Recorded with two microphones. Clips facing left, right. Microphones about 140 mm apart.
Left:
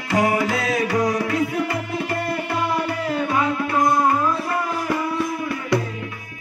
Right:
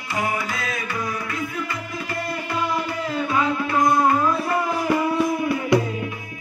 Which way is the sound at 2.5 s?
60° left (ahead or behind).